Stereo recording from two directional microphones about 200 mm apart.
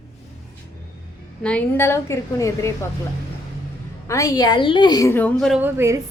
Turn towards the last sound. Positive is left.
turn(degrees=-10)  # may be behind; listen again after turning